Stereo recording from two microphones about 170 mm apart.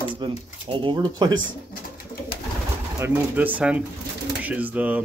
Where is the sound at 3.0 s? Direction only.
10° right (ahead or behind).